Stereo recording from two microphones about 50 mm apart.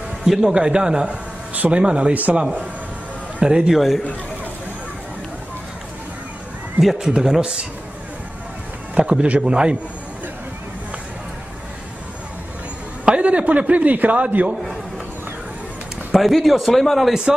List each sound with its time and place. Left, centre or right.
0.2 s a man's voice: centre
1.0 s a sound: right
1.7 s speech: right
3.3 s a man's voice: centre
3.7 s a man's voice: centre
6.8 s a man's voice: centre
7.1 s a man's voice: centre
9.0 s a sound: right
9.4 s speech: centre
13.0 s a sound: right
14.2 s speech: right
16.1 s a man's voice: centre